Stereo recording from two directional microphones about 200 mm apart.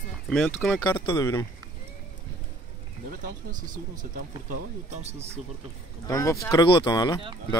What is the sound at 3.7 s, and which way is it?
Speech, 40° right (ahead or behind).